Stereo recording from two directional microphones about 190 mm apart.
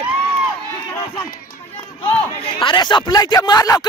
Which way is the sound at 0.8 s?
15° left (ahead or behind).